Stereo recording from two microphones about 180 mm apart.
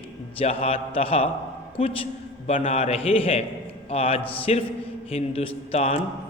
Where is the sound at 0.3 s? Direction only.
30° left (ahead or behind).